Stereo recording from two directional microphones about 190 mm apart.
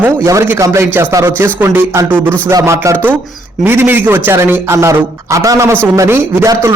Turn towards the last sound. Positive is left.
turn(degrees=-15)  # may be behind; listen again after turning